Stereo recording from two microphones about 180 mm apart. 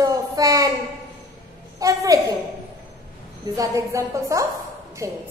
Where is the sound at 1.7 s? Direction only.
20° right (ahead or behind).